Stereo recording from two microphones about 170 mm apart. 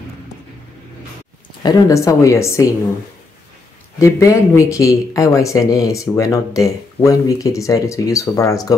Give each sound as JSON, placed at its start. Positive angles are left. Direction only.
{"t": 1.6, "sound": "speech", "side_deg": 20}
{"t": 4.0, "sound": "speech", "side_deg": 20}